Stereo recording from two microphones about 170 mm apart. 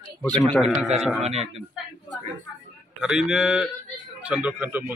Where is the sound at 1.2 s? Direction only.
40° right (ahead or behind).